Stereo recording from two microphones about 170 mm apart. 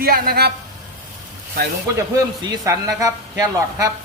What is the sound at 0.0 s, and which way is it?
Speech, 60° right (ahead or behind).